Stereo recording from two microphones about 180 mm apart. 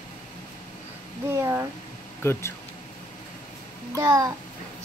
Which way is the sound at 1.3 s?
15° right (ahead or behind).